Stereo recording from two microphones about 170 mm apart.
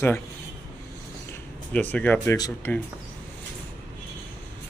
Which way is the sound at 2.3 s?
20° left (ahead or behind).